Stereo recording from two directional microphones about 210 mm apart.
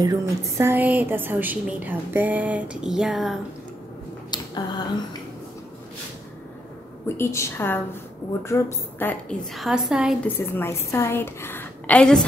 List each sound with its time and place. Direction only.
0.0 s a woman's voice: 15° right (ahead or behind)
4.3 s a sound: 20° left (ahead or behind)
7.2 s a woman's voice: 15° left (ahead or behind)
9.6 s a woman's voice: centre (ahead or behind)
10.2 s a woman's voice: 10° left (ahead or behind)